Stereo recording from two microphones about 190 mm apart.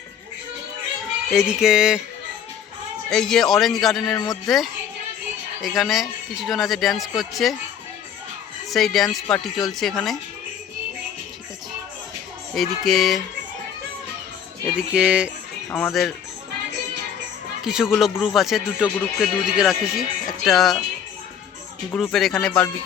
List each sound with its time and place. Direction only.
1.3 s speech: 5° right (ahead or behind)
3.1 s speech: centre (ahead or behind)
4.1 s speech: 20° left (ahead or behind)
4.4 s speech: centre (ahead or behind)
8.7 s speech: centre (ahead or behind)
12.5 s speech: centre (ahead or behind)
14.8 s speech: 5° right (ahead or behind)
17.6 s speech: 5° right (ahead or behind)
21.9 s speech: centre (ahead or behind)